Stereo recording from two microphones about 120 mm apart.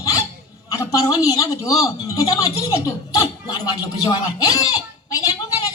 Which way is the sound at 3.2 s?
30° left (ahead or behind).